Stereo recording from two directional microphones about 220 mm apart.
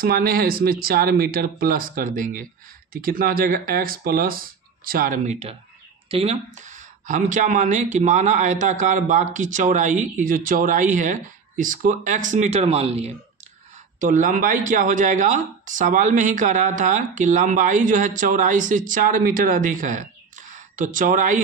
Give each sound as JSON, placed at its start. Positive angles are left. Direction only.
{"t": 0.0, "sound": "speech", "side_deg": -40}